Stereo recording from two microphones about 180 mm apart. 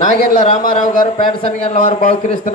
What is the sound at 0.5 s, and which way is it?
Speech, 45° left (ahead or behind).